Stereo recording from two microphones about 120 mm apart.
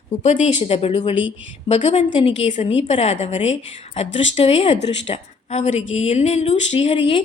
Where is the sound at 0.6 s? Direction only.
55° left (ahead or behind).